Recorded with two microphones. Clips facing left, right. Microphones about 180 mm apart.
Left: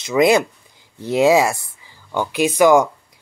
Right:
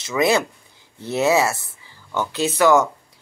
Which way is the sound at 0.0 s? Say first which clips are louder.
Left 4 dB; 15° left (ahead or behind).